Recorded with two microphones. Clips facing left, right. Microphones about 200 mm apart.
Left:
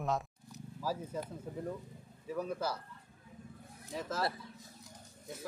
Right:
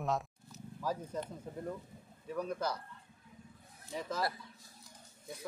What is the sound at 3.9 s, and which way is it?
Speech, centre (ahead or behind).